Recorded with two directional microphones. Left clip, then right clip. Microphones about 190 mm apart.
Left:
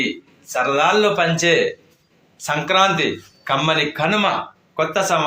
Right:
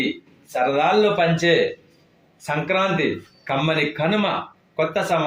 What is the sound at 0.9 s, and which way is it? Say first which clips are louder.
A man's voice: left 1 dB; 10° right (ahead or behind).